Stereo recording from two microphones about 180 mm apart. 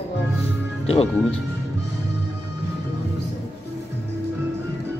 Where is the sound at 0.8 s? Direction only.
35° left (ahead or behind).